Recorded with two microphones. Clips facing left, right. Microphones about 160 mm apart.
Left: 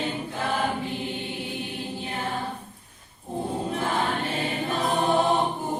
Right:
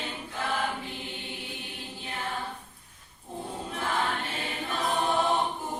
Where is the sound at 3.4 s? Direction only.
30° left (ahead or behind).